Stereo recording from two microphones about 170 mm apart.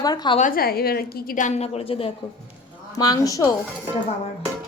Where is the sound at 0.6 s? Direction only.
65° left (ahead or behind); by 2.1 s 35° left (ahead or behind).